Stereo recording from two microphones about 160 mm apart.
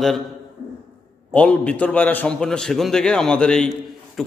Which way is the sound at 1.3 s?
10° left (ahead or behind).